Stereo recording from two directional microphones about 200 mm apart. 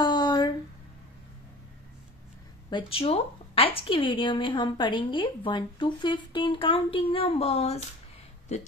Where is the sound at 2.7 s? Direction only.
30° left (ahead or behind).